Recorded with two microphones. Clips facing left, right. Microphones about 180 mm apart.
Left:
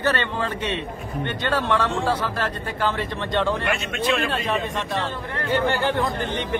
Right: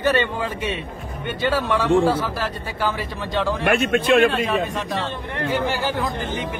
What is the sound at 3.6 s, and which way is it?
Speech, 60° right (ahead or behind).